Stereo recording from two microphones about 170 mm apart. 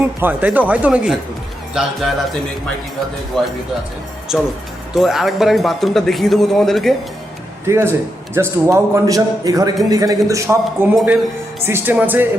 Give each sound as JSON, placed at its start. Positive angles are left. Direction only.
{"t": 0.0, "sound": "a man's voice", "side_deg": -10}
{"t": 3.3, "sound": "a man's voice", "side_deg": 0}
{"t": 7.7, "sound": "a man's voice", "side_deg": -15}
{"t": 10.9, "sound": "a man's voice", "side_deg": -5}